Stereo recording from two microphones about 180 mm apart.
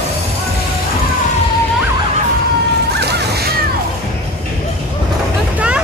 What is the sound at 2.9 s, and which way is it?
Music, 65° right (ahead or behind).